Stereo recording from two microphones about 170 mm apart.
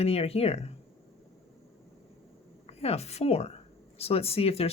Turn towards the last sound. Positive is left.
turn(degrees=35)  # may be behind; listen again after turning